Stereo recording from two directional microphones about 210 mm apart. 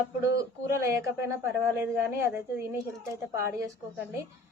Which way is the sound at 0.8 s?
15° right (ahead or behind).